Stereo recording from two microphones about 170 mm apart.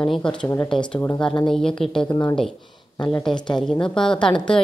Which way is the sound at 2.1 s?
25° left (ahead or behind).